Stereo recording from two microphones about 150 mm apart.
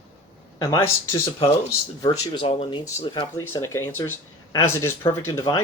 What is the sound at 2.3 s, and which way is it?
Speech, 35° left (ahead or behind).